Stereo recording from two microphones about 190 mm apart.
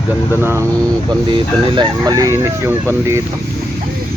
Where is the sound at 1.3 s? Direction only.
25° right (ahead or behind).